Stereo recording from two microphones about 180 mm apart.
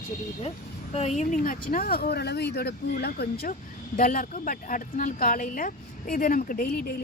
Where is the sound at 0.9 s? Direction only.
40° left (ahead or behind); by 3.5 s 60° left (ahead or behind).